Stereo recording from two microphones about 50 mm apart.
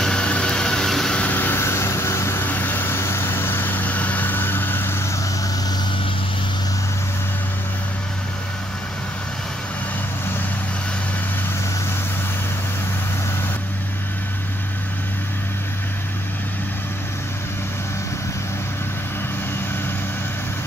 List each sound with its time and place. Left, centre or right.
0.0 s vehicle: centre
1.3 s vehicle: left
1.6 s vehicle: left
2.4 s vehicle: left
3.0 s vehicle: left